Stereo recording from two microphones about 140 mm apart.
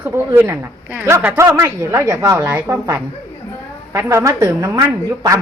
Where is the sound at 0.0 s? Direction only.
15° right (ahead or behind).